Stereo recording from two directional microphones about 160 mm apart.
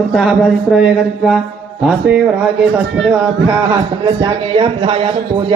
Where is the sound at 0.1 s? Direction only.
Centre (ahead or behind).